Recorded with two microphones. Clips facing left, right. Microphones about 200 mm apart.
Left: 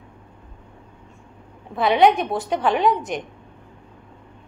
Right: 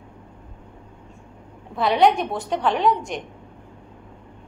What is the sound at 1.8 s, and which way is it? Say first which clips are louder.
A woman's voice: left 2 dB; centre (ahead or behind).